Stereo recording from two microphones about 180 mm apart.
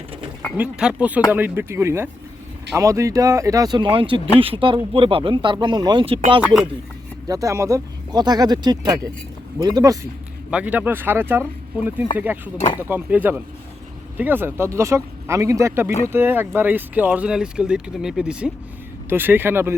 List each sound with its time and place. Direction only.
0.5 s speech: 5° right (ahead or behind); by 6.4 s 30° right (ahead or behind)
6.4 s speech: 5° right (ahead or behind)
7.3 s speech: 20° right (ahead or behind)
10.5 s speech: 10° right (ahead or behind)
12.5 s speech: 30° left (ahead or behind)
12.9 s speech: 10° right (ahead or behind)